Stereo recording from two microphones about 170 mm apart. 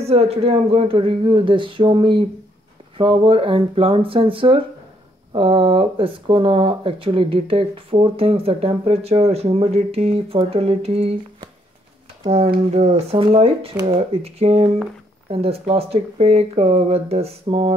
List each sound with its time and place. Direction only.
0.0 s speech: 40° right (ahead or behind)
12.7 s speech: 35° right (ahead or behind)